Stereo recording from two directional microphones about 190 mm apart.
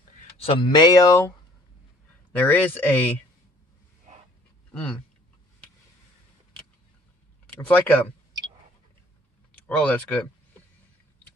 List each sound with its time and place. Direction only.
0.4 s speech: 25° left (ahead or behind)
2.3 s speech: 10° left (ahead or behind)
7.4 s speech: 10° left (ahead or behind)
9.5 s speech: 5° left (ahead or behind)